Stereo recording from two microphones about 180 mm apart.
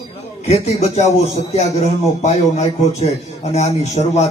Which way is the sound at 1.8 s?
40° left (ahead or behind).